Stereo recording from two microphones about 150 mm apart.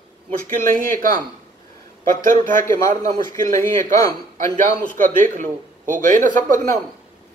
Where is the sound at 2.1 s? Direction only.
60° right (ahead or behind).